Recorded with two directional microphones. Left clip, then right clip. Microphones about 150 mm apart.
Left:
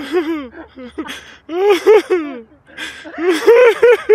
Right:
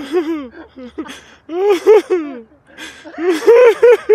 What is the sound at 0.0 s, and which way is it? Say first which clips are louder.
Speech: even; centre (ahead or behind).